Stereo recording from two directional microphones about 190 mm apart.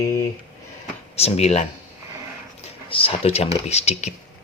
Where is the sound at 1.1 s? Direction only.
35° left (ahead or behind).